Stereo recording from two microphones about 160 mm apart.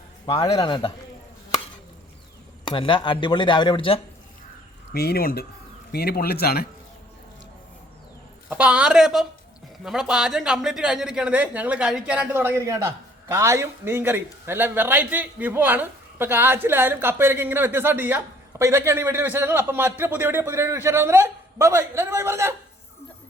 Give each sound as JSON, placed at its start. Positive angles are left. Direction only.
{"t": 0.5, "sound": "a man's voice", "side_deg": 30}
{"t": 2.6, "sound": "speech", "side_deg": 30}
{"t": 4.9, "sound": "speech", "side_deg": 75}
{"t": 8.4, "sound": "a woman's voice", "side_deg": -5}